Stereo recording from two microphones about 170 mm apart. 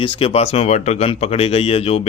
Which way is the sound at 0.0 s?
35° left (ahead or behind).